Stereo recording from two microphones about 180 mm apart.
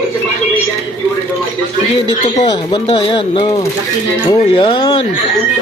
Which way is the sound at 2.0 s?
25° left (ahead or behind).